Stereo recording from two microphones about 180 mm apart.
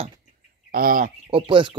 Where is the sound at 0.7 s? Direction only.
50° right (ahead or behind).